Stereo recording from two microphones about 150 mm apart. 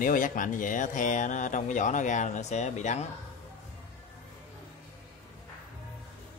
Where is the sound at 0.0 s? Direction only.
60° left (ahead or behind).